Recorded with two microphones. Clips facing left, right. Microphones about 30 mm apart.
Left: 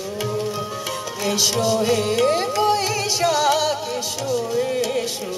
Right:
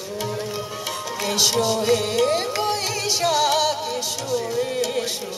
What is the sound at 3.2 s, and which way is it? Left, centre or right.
Music, centre.